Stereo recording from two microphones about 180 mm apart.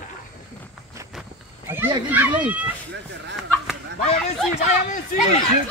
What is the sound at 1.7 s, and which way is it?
Speech, 10° right (ahead or behind).